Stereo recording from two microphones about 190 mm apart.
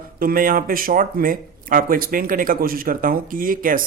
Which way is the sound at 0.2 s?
50° right (ahead or behind).